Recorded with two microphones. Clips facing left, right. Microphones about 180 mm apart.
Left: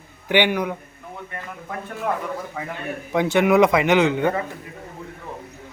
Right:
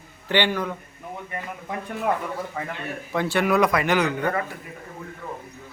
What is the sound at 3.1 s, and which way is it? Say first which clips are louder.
A man's voice: left 5 dB; 20° left (ahead or behind).